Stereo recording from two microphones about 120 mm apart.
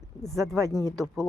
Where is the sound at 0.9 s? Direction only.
Centre (ahead or behind).